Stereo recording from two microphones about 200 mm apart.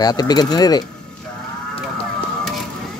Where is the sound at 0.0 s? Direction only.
20° left (ahead or behind).